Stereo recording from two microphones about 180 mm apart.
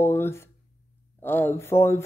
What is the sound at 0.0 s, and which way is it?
Speech, 10° left (ahead or behind).